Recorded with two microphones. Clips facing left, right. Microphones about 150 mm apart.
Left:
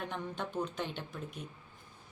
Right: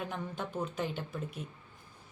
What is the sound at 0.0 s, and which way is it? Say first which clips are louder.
A woman's voice: right 1 dB; 5° right (ahead or behind).